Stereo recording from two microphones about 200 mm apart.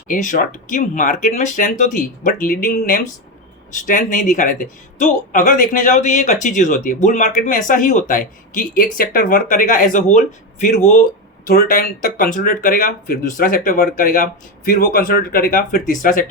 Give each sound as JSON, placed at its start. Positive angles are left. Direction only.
{"t": 0.1, "sound": "speech", "side_deg": 40}